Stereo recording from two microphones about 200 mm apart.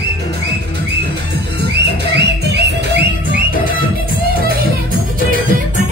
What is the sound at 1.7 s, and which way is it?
Music, 60° right (ahead or behind).